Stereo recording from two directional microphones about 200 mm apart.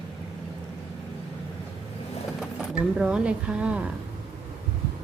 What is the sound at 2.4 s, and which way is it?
Speech, 5° right (ahead or behind).